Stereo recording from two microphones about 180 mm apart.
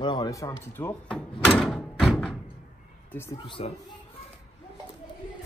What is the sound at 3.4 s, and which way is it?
Speech, 30° left (ahead or behind).